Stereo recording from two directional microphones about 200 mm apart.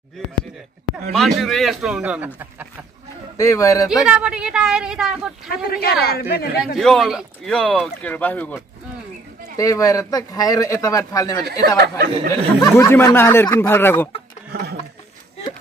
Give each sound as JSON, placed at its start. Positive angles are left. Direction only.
{"t": 1.1, "sound": "speech", "side_deg": 0}
{"t": 3.3, "sound": "a man's voice", "side_deg": 15}
{"t": 4.0, "sound": "speech", "side_deg": -5}
{"t": 5.5, "sound": "a woman's voice", "side_deg": 50}
{"t": 6.6, "sound": "speech", "side_deg": 0}
{"t": 9.6, "sound": "a man's voice", "side_deg": 15}
{"t": 11.6, "sound": "speech", "side_deg": -55}
{"t": 12.5, "sound": "a man's voice", "side_deg": 15}
{"t": 14.5, "sound": "a sound", "side_deg": -55}